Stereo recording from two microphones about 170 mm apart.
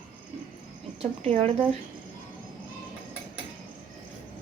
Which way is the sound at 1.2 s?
40° right (ahead or behind).